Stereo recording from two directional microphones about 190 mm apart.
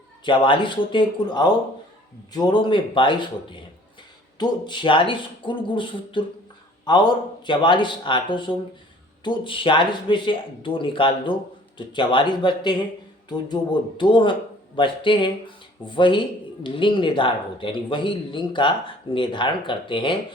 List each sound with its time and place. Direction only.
0.3 s speech: 25° left (ahead or behind)